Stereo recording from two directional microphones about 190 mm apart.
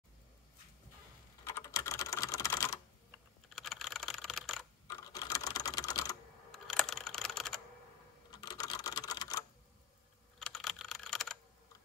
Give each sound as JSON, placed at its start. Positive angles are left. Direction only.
{"t": 1.4, "sound": "typing", "side_deg": 15}
{"t": 3.5, "sound": "typing", "side_deg": 0}
{"t": 5.1, "sound": "typing", "side_deg": 20}
{"t": 6.5, "sound": "computer keyboard", "side_deg": 0}
{"t": 8.3, "sound": "typewriter", "side_deg": 20}
{"t": 10.4, "sound": "computer keyboard", "side_deg": 0}